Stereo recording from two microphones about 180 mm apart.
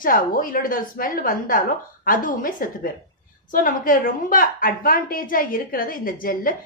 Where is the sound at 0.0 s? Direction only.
50° left (ahead or behind).